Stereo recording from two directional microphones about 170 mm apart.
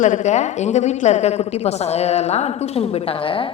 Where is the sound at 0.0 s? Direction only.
45° left (ahead or behind).